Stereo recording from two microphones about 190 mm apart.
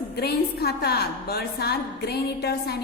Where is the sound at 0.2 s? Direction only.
55° left (ahead or behind).